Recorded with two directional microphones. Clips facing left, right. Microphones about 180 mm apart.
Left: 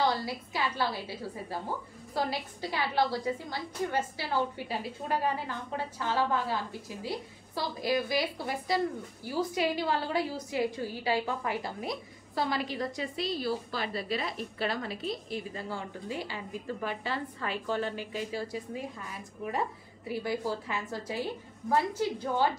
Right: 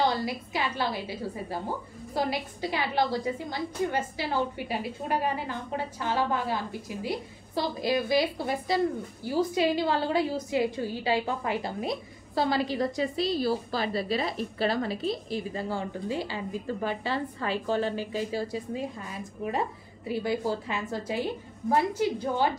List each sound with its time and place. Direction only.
0.0 s a woman's voice: 20° right (ahead or behind)